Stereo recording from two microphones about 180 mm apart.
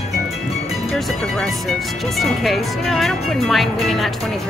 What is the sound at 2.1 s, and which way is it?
Speech, centre (ahead or behind).